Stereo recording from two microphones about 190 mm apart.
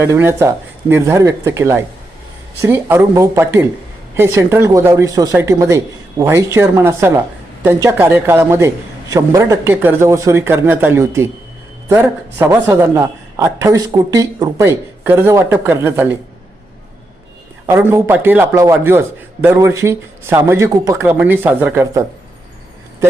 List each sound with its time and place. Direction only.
0.0 s a man's voice: 15° right (ahead or behind)
17.7 s a man's voice: 15° right (ahead or behind)